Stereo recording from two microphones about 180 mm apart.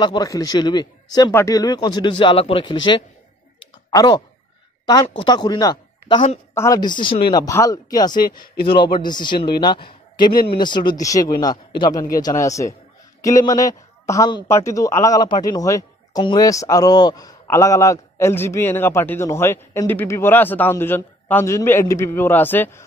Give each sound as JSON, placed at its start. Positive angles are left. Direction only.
{"t": 0.0, "sound": "a man's voice", "side_deg": 20}